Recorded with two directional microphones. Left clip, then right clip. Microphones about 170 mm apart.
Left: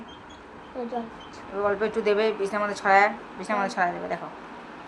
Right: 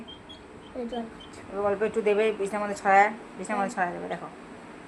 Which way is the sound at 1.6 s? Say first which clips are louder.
Left 1 dB; 10° left (ahead or behind).